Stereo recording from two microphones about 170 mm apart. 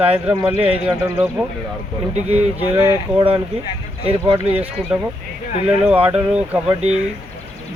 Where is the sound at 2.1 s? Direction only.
40° right (ahead or behind).